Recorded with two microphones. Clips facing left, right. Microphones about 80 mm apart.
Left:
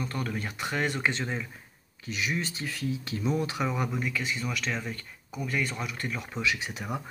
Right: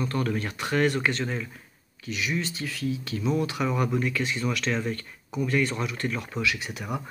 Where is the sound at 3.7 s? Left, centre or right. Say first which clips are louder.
Right 4 dB; centre.